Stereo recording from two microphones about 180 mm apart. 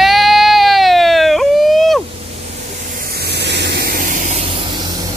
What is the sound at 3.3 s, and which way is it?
Spray, 70° right (ahead or behind).